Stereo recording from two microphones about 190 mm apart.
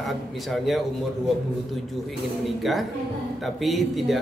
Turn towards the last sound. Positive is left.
turn(degrees=0)  # may be behind; listen again after turning